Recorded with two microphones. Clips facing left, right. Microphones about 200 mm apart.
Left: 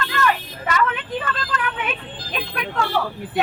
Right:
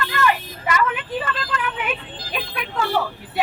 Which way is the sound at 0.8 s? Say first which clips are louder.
Left 2 dB; 5° right (ahead or behind).